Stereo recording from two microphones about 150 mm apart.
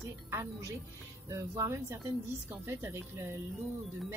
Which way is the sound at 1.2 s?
20° right (ahead or behind).